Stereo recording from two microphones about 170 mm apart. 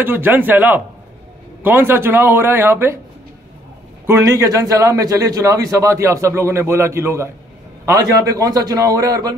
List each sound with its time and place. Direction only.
0.0 s speech: 10° right (ahead or behind)
4.0 s a man's voice: 15° right (ahead or behind)